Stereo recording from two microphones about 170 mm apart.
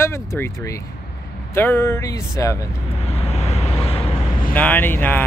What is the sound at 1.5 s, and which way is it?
Speech, 10° left (ahead or behind).